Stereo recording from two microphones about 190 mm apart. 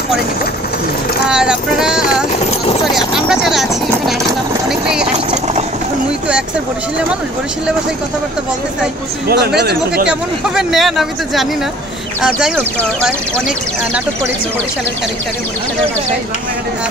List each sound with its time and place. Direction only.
1.3 s speech: 5° right (ahead or behind)
4.6 s vehicle: 5° right (ahead or behind)
5.1 s a sound: 35° right (ahead or behind)
9.3 s speech: 60° right (ahead or behind)
10.0 s speech: 5° right (ahead or behind)